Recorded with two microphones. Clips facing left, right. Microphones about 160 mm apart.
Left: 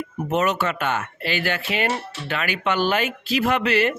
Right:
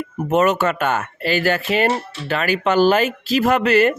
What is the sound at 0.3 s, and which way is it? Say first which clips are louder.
Speech: right 5 dB; 50° right (ahead or behind).